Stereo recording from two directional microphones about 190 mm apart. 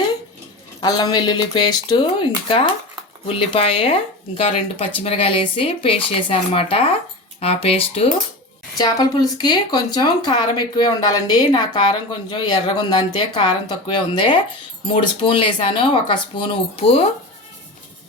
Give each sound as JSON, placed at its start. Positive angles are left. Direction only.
{"t": 0.8, "sound": "speech", "side_deg": 20}